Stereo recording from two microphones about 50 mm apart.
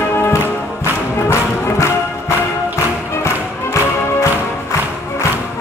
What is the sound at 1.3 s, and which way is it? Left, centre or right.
Music, left.